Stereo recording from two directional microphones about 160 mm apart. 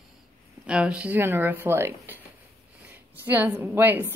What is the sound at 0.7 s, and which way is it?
A woman's voice, 5° right (ahead or behind).